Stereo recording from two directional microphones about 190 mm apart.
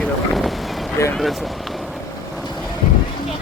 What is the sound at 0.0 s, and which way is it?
Vehicle, centre (ahead or behind).